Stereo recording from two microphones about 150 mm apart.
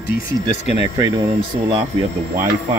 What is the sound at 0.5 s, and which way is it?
Speech, 45° left (ahead or behind).